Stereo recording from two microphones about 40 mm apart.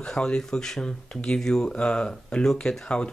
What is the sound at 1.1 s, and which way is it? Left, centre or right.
Speech, left.